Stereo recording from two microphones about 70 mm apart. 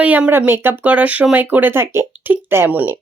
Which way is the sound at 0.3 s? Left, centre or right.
Right.